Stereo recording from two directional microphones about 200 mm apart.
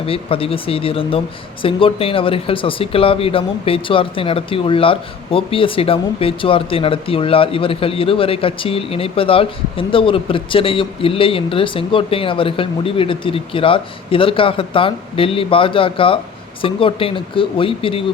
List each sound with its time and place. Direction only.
0.0 s speech: 30° left (ahead or behind)